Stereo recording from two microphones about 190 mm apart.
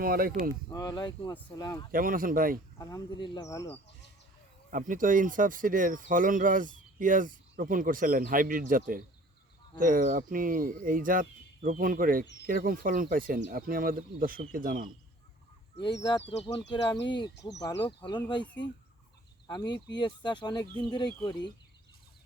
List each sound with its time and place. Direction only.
0.0 s speech: 50° right (ahead or behind)
0.7 s speech: 20° left (ahead or behind)
1.9 s speech: 50° right (ahead or behind)
2.7 s speech: 20° left (ahead or behind)
4.7 s speech: 45° right (ahead or behind)
16.3 s speech: 35° left (ahead or behind)
19.5 s speech: 20° left (ahead or behind)